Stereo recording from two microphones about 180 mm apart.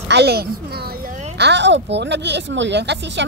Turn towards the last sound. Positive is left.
turn(degrees=-75)  # may be behind; listen again after turning